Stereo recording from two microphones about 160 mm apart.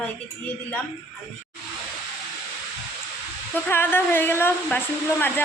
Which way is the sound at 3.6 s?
15° left (ahead or behind).